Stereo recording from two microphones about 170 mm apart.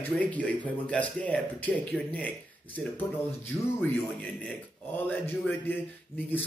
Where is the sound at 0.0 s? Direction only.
10° left (ahead or behind).